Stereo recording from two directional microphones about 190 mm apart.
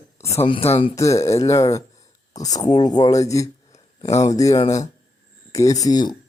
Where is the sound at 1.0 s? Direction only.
15° left (ahead or behind).